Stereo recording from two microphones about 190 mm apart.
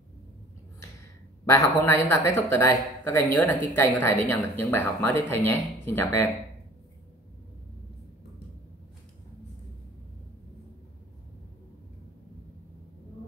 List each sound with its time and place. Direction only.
1.4 s speech: 15° left (ahead or behind)